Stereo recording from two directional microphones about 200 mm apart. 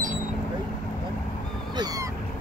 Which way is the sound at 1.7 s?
20° right (ahead or behind).